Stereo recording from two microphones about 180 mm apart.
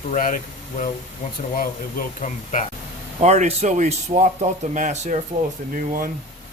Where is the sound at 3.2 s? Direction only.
40° right (ahead or behind).